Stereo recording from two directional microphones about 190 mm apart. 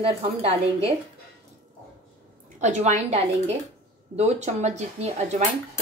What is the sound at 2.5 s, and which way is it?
A woman's voice, 40° right (ahead or behind).